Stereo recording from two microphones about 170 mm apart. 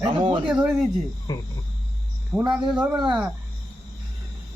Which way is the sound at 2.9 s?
25° right (ahead or behind).